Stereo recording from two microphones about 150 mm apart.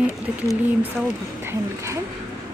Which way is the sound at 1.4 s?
20° right (ahead or behind).